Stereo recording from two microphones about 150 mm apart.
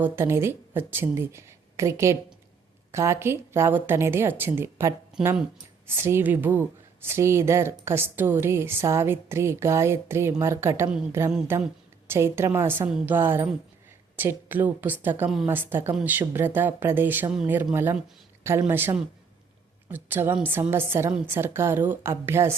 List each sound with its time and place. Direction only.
0.0 s speech: 15° right (ahead or behind)
6.0 s speech: 15° right (ahead or behind)